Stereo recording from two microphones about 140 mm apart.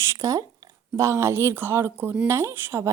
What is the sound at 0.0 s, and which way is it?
Speech, 20° right (ahead or behind).